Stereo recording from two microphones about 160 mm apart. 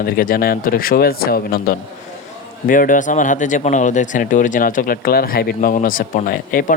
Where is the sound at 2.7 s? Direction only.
55° left (ahead or behind).